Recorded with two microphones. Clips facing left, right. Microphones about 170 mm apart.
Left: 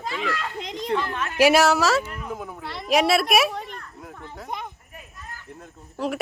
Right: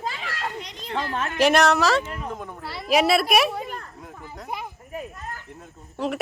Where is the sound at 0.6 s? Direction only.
90° left; by 1.1 s 65° left (ahead or behind).